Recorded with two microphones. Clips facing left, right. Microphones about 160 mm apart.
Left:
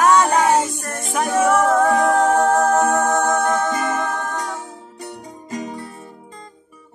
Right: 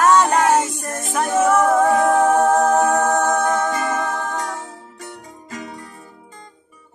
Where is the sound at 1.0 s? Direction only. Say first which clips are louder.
Even; centre (ahead or behind).